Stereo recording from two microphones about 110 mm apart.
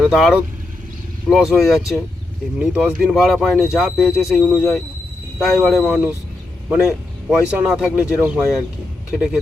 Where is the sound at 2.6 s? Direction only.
15° right (ahead or behind).